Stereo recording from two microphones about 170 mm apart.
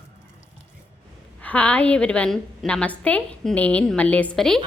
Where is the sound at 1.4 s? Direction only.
10° left (ahead or behind).